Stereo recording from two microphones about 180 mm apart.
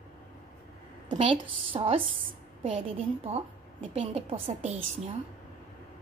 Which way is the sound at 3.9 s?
35° right (ahead or behind).